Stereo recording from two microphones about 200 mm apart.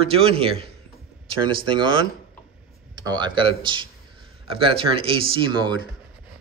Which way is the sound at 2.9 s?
20° right (ahead or behind).